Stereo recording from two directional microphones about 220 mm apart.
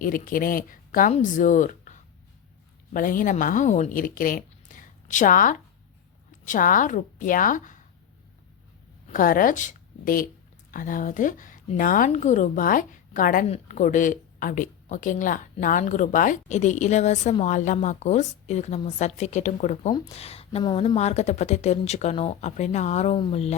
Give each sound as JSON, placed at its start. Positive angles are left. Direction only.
{"t": 0.0, "sound": "speech", "side_deg": 40}
{"t": 9.0, "sound": "a woman's voice", "side_deg": 40}